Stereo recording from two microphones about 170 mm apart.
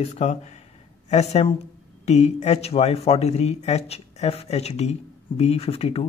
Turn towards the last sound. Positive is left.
turn(degrees=35)  # may be behind; listen again after turning